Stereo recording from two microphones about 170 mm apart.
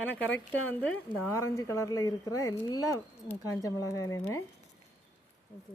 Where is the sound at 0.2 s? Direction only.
10° left (ahead or behind).